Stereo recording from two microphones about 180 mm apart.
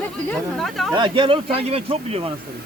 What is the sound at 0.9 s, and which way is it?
Speech, 25° right (ahead or behind).